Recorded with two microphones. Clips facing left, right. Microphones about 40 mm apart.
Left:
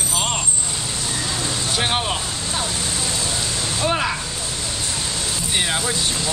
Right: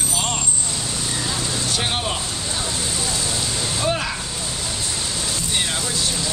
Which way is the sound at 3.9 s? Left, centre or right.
Centre.